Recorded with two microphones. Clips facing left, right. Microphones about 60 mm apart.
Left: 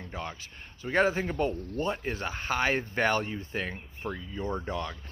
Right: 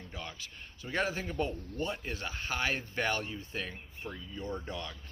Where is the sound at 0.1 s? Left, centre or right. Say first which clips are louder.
Left 6 dB; left.